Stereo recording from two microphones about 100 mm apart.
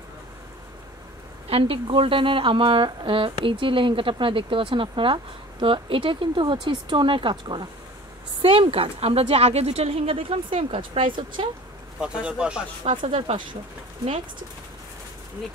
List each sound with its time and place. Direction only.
1.5 s speech: 65° right (ahead or behind)
8.4 s a woman's voice: 65° right (ahead or behind)
12.0 s speech: 10° right (ahead or behind)
12.9 s a woman's voice: 70° right (ahead or behind)